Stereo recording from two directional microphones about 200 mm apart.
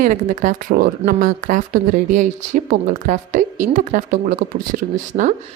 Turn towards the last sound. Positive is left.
turn(degrees=-25)  # may be behind; listen again after turning